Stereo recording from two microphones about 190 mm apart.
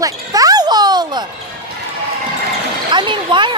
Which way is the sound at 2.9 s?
25° right (ahead or behind).